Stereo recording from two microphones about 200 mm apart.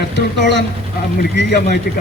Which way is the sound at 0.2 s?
60° left (ahead or behind).